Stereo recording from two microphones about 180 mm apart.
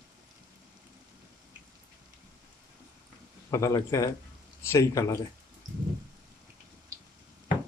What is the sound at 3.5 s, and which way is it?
A man's voice, 20° left (ahead or behind).